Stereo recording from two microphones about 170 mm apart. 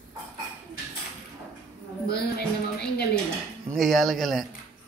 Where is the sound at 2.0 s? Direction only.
70° left (ahead or behind).